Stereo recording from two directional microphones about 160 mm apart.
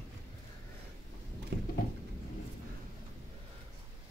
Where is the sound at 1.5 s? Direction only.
90° right.